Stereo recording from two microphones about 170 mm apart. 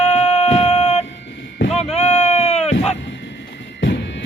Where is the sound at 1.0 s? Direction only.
90° left.